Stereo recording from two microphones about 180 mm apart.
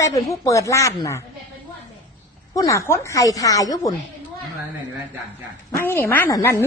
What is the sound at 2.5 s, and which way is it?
A woman's voice, 20° left (ahead or behind).